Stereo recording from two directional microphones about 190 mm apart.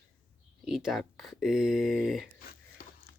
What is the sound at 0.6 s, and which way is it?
Speech, centre (ahead or behind).